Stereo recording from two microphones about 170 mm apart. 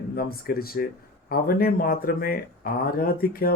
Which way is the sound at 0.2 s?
60° left (ahead or behind).